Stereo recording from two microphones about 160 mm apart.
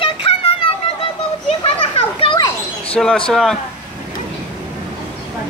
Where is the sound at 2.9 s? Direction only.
5° left (ahead or behind).